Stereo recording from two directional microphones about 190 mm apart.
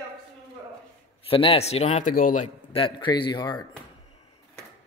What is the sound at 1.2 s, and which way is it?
A man's voice, 30° left (ahead or behind).